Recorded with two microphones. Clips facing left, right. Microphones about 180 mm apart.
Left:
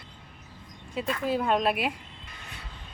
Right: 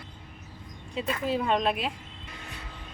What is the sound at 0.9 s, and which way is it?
Speech, centre (ahead or behind).